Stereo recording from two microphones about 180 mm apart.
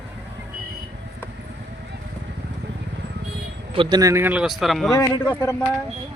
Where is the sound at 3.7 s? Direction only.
25° right (ahead or behind); by 4.9 s centre (ahead or behind).